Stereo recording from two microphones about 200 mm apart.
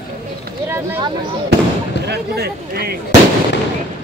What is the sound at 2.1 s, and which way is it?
Speech, 50° right (ahead or behind).